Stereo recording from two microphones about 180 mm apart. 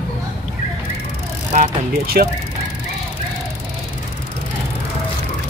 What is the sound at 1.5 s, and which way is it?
Speech, 50° right (ahead or behind).